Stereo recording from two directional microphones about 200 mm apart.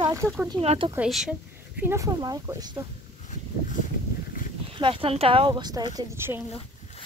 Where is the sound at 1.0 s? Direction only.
Centre (ahead or behind).